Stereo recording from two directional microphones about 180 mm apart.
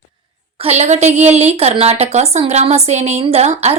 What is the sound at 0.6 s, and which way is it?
A woman's voice, 35° right (ahead or behind).